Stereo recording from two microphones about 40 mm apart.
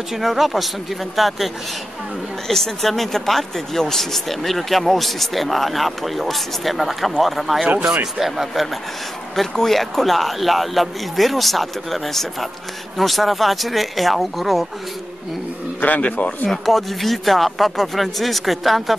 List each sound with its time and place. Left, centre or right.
0.1 s a man's voice: centre
9.3 s speech: centre
15.8 s speech: left
16.4 s speech: centre